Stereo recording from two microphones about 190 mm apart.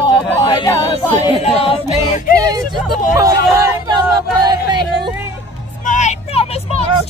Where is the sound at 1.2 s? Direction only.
30° left (ahead or behind).